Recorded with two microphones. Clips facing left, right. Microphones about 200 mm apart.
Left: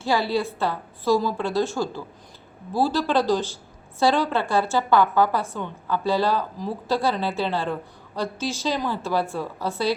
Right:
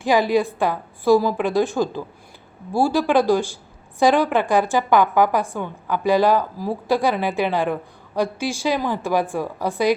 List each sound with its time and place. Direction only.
0.0 s a woman's voice: 15° right (ahead or behind)